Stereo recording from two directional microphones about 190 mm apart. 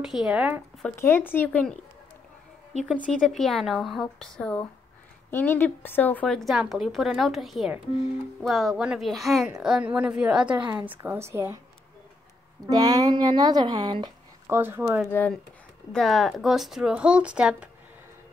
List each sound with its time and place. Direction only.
0.0 s a woman's voice: 5° right (ahead or behind)
0.8 s speech: 10° left (ahead or behind)
3.1 s a woman's voice: 5° left (ahead or behind); by 11.5 s 15° right (ahead or behind)
12.6 s speech: 20° right (ahead or behind)
14.6 s a woman's voice: 10° right (ahead or behind)
15.0 s a woman's voice: 10° left (ahead or behind)